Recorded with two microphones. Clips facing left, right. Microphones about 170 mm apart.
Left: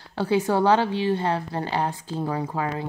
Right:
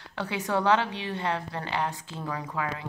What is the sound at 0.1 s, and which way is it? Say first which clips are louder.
Speech: left 7 dB; 30° left (ahead or behind).